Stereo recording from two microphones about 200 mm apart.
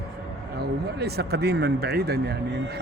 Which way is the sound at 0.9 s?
55° right (ahead or behind).